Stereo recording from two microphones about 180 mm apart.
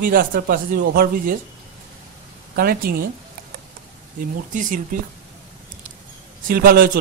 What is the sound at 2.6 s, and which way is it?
Speech, 55° right (ahead or behind).